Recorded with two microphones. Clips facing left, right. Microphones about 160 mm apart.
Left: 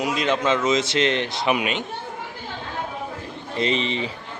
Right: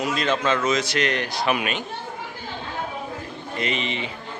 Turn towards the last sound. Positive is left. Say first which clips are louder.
# left 4 dB
turn(degrees=30)  # may be behind; listen again after turning